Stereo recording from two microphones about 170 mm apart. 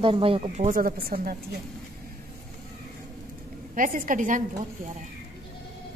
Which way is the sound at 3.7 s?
55° right (ahead or behind).